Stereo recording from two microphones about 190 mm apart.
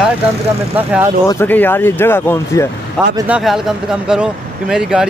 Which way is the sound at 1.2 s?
10° left (ahead or behind).